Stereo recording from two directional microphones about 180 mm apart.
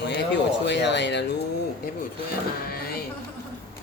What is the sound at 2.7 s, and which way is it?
Music, 55° left (ahead or behind).